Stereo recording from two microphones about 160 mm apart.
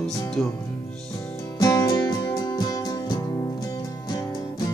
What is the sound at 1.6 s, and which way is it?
Music, 20° left (ahead or behind).